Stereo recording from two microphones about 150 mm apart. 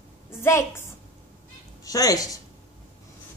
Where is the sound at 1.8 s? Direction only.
25° left (ahead or behind).